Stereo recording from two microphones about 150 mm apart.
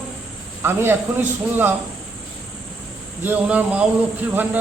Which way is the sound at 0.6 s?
15° right (ahead or behind).